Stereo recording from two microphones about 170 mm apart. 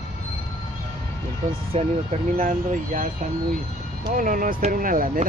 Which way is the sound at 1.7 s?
40° right (ahead or behind).